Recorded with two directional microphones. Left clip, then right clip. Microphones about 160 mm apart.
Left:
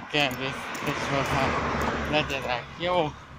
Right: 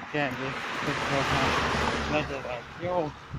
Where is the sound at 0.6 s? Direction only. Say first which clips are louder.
Even; 20° right (ahead or behind); by 3.1 s centre (ahead or behind).